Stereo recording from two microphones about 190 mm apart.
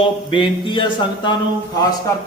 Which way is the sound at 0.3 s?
25° left (ahead or behind).